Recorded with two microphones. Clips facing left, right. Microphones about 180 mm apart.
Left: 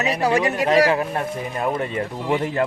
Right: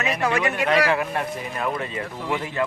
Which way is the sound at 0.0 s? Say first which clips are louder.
Left 3 dB; 35° left (ahead or behind).